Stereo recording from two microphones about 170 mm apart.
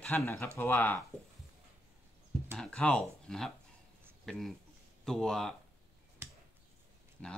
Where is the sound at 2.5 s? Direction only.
5° left (ahead or behind).